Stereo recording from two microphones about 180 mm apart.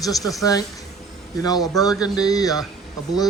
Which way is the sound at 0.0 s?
20° left (ahead or behind).